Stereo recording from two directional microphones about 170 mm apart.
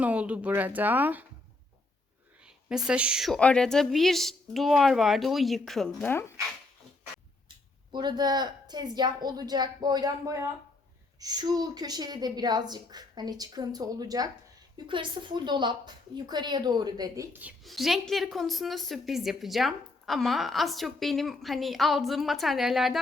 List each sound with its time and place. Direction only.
0.0 s speech: 10° right (ahead or behind)
2.6 s a woman's voice: 5° right (ahead or behind); by 6.3 s 15° left (ahead or behind)
7.9 s a woman's voice: 25° right (ahead or behind)
17.3 s a woman's voice: 5° right (ahead or behind)